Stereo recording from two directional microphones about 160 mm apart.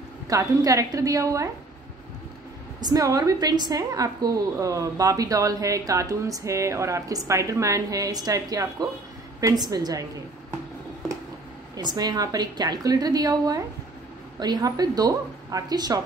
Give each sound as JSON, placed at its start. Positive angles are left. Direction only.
{"t": 0.3, "sound": "a woman's voice", "side_deg": -20}
{"t": 2.8, "sound": "a woman's voice", "side_deg": -20}
{"t": 11.7, "sound": "a woman's voice", "side_deg": -25}